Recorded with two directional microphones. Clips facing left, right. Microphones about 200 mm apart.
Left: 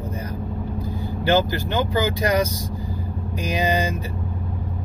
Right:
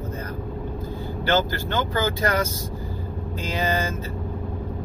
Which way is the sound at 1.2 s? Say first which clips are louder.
Left 3 dB; 15° left (ahead or behind).